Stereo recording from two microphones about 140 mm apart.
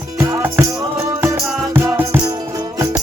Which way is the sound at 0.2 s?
10° right (ahead or behind).